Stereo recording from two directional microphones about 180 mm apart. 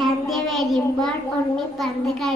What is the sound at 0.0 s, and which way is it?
Child singing, centre (ahead or behind).